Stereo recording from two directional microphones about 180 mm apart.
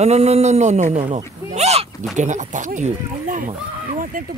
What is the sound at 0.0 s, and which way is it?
Speech, 35° right (ahead or behind).